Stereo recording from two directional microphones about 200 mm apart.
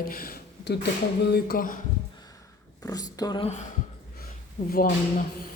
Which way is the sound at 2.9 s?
20° left (ahead or behind).